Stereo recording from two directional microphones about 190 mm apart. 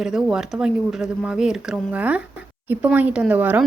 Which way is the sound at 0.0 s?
5° right (ahead or behind).